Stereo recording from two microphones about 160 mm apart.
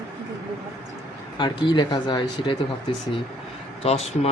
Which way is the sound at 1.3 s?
30° left (ahead or behind).